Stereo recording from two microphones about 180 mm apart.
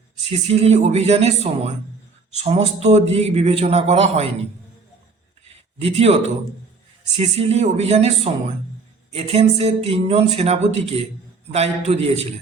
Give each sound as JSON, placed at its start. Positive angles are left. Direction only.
{"t": 0.3, "sound": "a man's voice", "side_deg": -35}
{"t": 5.8, "sound": "a man's voice", "side_deg": -35}